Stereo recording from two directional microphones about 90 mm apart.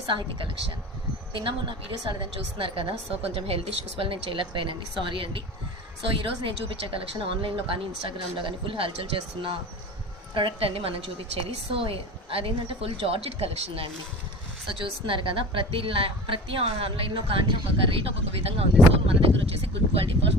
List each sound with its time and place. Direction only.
0.1 s speech: 65° right (ahead or behind)
2.6 s a woman's voice: 80° right
14.7 s a woman's voice: 75° right (ahead or behind); by 20.1 s 90° right